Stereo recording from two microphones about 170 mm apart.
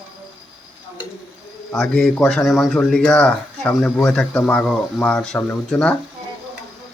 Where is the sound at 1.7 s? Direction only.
5° left (ahead or behind).